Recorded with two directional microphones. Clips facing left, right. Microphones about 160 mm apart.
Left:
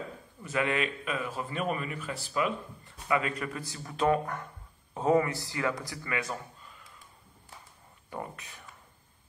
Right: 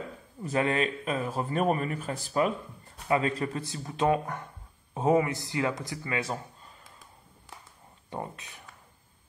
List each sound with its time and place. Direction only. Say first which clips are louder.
0.4 s a man's voice: right 3 dB; 35° right (ahead or behind)
3.1 s speech: right 3 dB; 30° right (ahead or behind)
8.1 s speech: right 2 dB; 25° right (ahead or behind)